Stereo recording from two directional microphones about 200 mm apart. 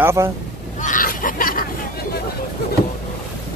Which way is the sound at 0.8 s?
40° left (ahead or behind).